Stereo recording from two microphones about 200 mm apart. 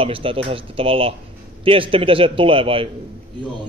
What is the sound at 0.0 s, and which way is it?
A man's voice, 25° right (ahead or behind).